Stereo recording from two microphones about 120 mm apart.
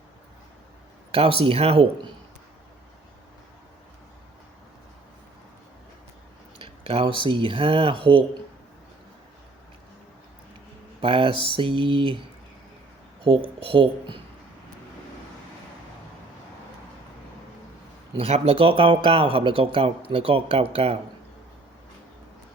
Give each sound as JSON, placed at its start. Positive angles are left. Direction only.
{"t": 1.1, "sound": "speech", "side_deg": -50}
{"t": 6.6, "sound": "a sound", "side_deg": -50}
{"t": 7.3, "sound": "speech", "side_deg": -45}
{"t": 11.0, "sound": "speech", "side_deg": -45}
{"t": 13.2, "sound": "speech", "side_deg": -45}
{"t": 18.1, "sound": "speech", "side_deg": -55}